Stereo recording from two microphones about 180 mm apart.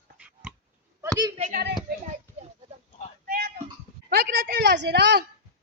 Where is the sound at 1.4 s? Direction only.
45° right (ahead or behind).